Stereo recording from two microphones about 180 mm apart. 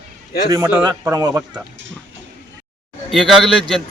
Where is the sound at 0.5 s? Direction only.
15° right (ahead or behind).